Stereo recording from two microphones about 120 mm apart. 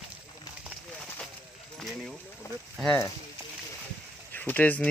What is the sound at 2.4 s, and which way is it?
Speech, 25° left (ahead or behind).